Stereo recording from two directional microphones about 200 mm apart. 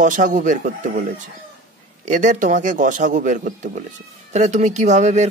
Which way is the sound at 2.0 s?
40° right (ahead or behind).